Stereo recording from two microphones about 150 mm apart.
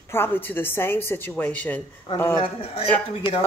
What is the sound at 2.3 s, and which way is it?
Speech, 40° left (ahead or behind).